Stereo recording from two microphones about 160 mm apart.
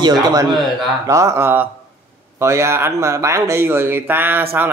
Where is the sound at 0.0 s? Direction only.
25° right (ahead or behind).